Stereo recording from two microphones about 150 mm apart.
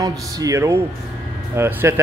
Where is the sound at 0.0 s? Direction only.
25° right (ahead or behind).